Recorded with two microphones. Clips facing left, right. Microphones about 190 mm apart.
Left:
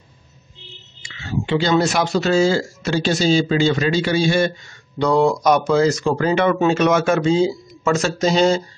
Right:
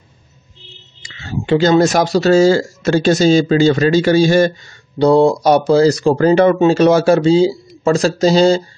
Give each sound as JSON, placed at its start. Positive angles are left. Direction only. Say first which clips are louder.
{"t": 1.0, "sound": "speech", "louder": "right 3 dB", "side_deg": -40}